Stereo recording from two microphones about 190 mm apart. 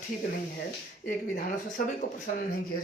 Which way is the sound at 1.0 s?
50° left (ahead or behind).